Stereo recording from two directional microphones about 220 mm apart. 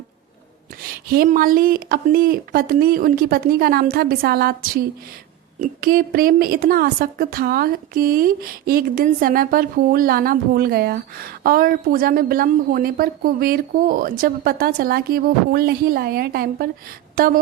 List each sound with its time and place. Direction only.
1.1 s a woman's voice: 40° right (ahead or behind)